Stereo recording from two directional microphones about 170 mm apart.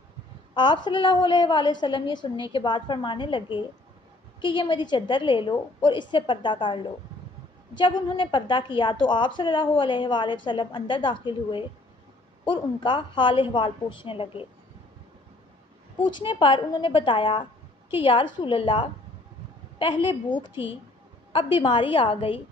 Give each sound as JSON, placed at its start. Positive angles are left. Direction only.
{"t": 0.8, "sound": "a woman's voice", "side_deg": 30}
{"t": 16.1, "sound": "a woman's voice", "side_deg": 30}